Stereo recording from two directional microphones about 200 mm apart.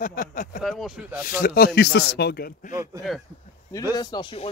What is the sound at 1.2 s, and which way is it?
Speech, 45° left (ahead or behind).